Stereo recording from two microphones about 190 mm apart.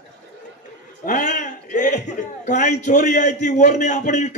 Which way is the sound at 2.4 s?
40° left (ahead or behind).